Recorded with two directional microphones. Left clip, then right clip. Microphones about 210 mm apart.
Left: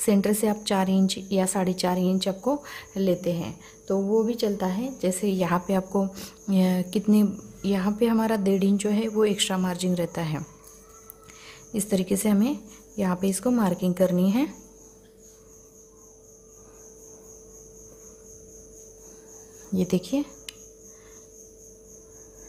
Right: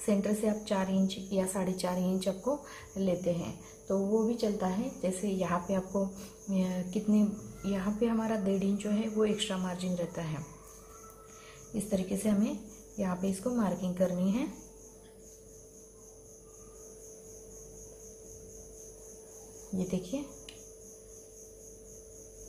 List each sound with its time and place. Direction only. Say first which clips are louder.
0.0 s a woman's voice: left 7 dB; 50° left (ahead or behind)
11.7 s a woman's voice: left 8 dB; 50° left (ahead or behind)
19.9 s speech: left 11 dB; 50° left (ahead or behind)